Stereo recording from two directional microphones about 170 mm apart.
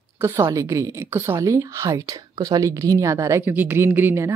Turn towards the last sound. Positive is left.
turn(degrees=-15)  # may be behind; listen again after turning